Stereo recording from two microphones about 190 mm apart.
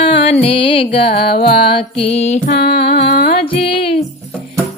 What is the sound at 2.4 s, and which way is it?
Music, 55° left (ahead or behind).